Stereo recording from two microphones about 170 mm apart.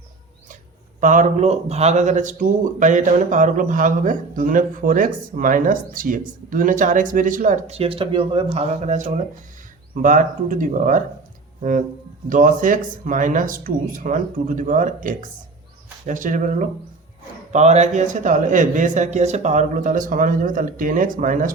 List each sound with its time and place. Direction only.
1.0 s speech: 50° right (ahead or behind)
12.3 s speech: 50° right (ahead or behind)